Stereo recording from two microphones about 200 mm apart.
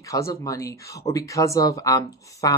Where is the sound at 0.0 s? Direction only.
15° left (ahead or behind).